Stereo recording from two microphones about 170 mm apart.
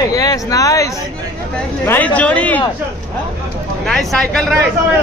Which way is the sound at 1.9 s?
10° left (ahead or behind).